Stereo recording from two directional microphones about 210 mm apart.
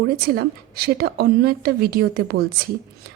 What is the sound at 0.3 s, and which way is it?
Speech, 45° right (ahead or behind).